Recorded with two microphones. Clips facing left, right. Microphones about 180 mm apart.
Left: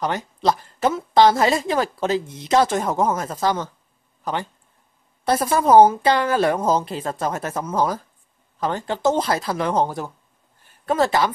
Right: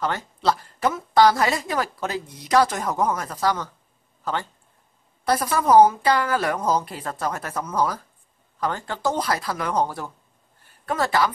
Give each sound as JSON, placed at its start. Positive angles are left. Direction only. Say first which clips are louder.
{"t": 0.0, "sound": "a woman's voice", "louder": "left 2 dB", "side_deg": 15}